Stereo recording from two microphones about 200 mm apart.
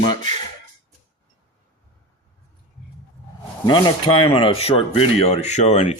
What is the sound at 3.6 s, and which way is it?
Speech, 20° left (ahead or behind).